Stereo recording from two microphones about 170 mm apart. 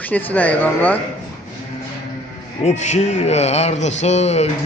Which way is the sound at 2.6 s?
40° left (ahead or behind).